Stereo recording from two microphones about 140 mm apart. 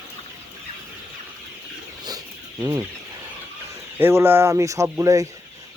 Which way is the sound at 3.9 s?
15° right (ahead or behind).